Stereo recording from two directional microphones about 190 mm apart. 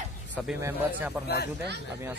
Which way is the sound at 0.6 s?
15° right (ahead or behind).